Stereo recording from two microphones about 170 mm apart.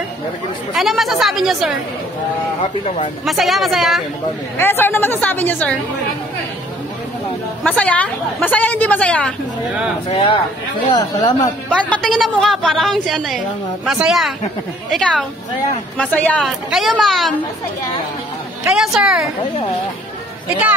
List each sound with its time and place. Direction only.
0.7 s a woman's voice: centre (ahead or behind)
3.3 s a woman's voice: centre (ahead or behind)
4.6 s a woman's voice: 15° left (ahead or behind)
7.6 s a woman's voice: 5° left (ahead or behind)
10.0 s speech: 35° left (ahead or behind)
11.7 s a woman's voice: 5° left (ahead or behind)
18.7 s a woman's voice: 5° right (ahead or behind)